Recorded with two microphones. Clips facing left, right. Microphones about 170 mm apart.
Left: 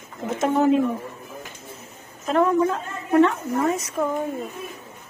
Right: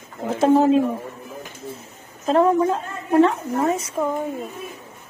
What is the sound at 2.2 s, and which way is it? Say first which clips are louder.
A woman's voice: right 2 dB; 30° right (ahead or behind).